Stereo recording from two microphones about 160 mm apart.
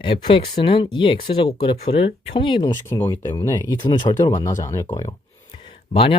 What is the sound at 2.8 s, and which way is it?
Speech, 15° left (ahead or behind).